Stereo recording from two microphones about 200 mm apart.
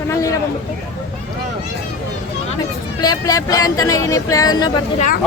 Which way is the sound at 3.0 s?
15° left (ahead or behind).